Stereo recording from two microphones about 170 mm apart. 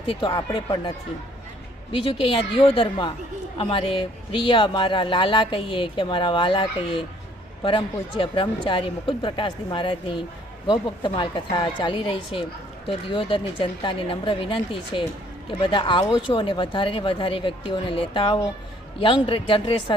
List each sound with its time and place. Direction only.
0.0 s speech: 30° left (ahead or behind)